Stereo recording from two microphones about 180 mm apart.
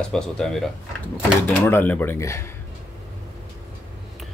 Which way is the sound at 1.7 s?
10° left (ahead or behind).